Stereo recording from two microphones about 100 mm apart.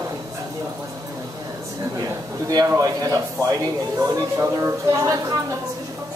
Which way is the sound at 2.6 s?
35° right (ahead or behind).